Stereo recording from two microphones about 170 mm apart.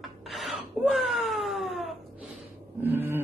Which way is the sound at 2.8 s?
10° right (ahead or behind).